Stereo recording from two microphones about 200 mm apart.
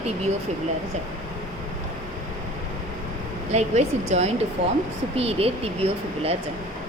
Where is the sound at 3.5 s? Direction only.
35° right (ahead or behind).